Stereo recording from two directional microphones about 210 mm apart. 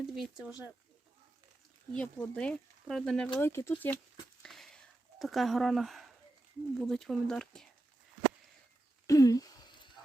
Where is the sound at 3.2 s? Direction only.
10° left (ahead or behind).